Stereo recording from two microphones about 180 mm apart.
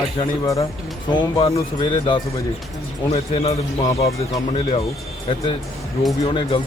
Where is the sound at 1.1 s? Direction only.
30° left (ahead or behind).